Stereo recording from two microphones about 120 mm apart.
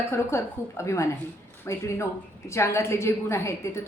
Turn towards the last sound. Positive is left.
turn(degrees=20)  # may be behind; listen again after turning